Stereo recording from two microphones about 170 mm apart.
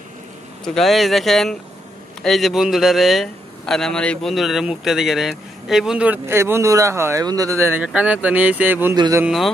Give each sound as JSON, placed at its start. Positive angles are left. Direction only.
{"t": 0.7, "sound": "a man's voice", "side_deg": 0}
{"t": 8.9, "sound": "speech", "side_deg": -25}
{"t": 9.2, "sound": "a man's voice", "side_deg": 0}